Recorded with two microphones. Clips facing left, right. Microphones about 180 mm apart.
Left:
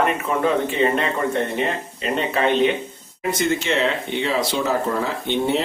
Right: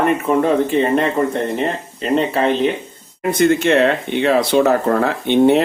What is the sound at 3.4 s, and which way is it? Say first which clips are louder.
Speech: right 8 dB; 55° right (ahead or behind).